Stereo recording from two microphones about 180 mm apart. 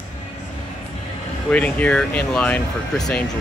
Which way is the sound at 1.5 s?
5° left (ahead or behind).